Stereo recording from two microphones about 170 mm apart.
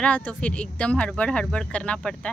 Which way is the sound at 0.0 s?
5° left (ahead or behind).